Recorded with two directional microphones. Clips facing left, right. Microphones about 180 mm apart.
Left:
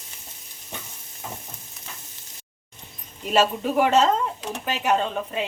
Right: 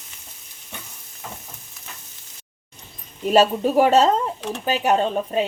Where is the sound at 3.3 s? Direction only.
35° right (ahead or behind).